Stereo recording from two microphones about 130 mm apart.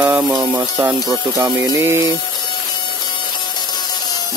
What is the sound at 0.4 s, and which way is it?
Speech, 15° right (ahead or behind).